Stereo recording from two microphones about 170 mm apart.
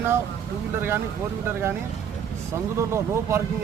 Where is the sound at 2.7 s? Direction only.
15° right (ahead or behind).